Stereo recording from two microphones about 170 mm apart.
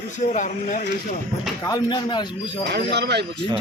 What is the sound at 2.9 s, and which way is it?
Speech, 85° right.